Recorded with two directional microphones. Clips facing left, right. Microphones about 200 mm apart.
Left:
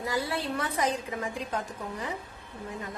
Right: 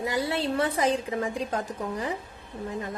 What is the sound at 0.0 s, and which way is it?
A woman's voice, 25° right (ahead or behind).